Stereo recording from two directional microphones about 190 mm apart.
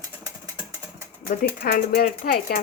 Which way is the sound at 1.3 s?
50° left (ahead or behind).